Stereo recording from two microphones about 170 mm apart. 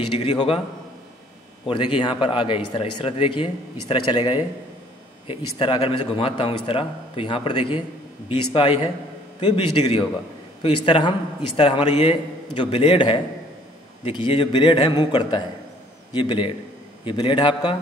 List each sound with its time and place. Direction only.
0.1 s a man's voice: 35° left (ahead or behind)
1.7 s a man's voice: 30° left (ahead or behind)